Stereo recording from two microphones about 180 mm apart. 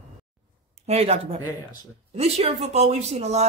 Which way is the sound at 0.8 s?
35° right (ahead or behind).